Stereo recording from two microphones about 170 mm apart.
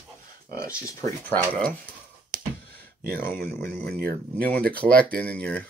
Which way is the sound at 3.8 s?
65° right (ahead or behind).